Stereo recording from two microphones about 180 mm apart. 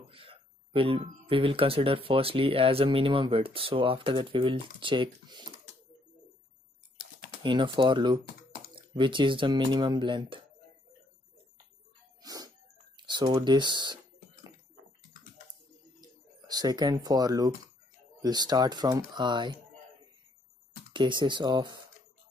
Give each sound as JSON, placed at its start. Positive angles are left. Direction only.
{"t": 0.1, "sound": "speech", "side_deg": -30}
{"t": 7.4, "sound": "speech", "side_deg": -25}
{"t": 12.2, "sound": "music", "side_deg": -20}
{"t": 12.9, "sound": "speech", "side_deg": -25}
{"t": 16.0, "sound": "speech", "side_deg": -20}
{"t": 20.9, "sound": "speech", "side_deg": -25}